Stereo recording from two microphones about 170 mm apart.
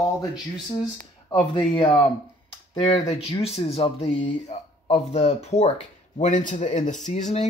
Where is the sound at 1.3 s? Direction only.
25° left (ahead or behind).